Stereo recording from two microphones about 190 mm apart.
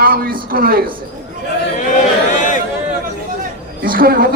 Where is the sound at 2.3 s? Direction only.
45° left (ahead or behind).